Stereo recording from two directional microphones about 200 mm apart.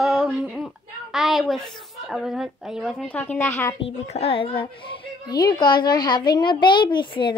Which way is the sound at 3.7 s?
30° left (ahead or behind).